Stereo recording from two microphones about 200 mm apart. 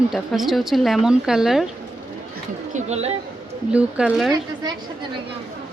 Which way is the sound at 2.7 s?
35° right (ahead or behind).